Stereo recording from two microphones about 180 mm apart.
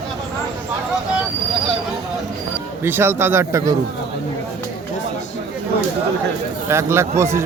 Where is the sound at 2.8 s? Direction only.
10° right (ahead or behind).